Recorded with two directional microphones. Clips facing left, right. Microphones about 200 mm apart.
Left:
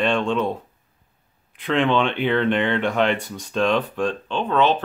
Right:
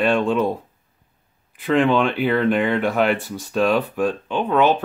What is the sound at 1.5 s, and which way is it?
Speech, 5° right (ahead or behind).